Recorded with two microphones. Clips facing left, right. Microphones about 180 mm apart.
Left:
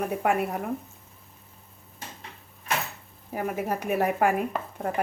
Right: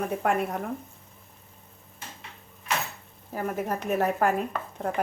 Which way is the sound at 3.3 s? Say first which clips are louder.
Left 1 dB; 10° left (ahead or behind).